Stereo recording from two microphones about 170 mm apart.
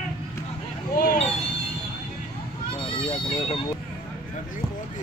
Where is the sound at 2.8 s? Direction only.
35° left (ahead or behind).